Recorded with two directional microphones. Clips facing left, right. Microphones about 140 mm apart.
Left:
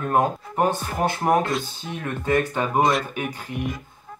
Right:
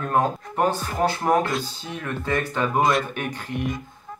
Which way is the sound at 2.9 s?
5° left (ahead or behind).